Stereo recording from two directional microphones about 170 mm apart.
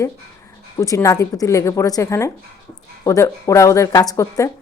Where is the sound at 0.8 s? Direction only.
20° left (ahead or behind).